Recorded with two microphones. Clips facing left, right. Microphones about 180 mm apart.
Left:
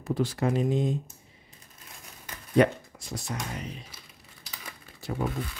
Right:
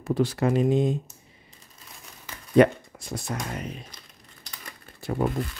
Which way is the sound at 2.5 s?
60° right (ahead or behind).